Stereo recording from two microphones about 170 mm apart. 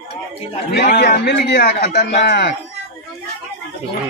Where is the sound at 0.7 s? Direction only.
70° left (ahead or behind); by 2.5 s 85° left.